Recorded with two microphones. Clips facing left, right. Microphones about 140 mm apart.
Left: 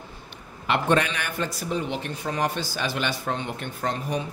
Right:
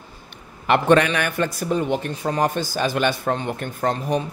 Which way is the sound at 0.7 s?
65° right (ahead or behind).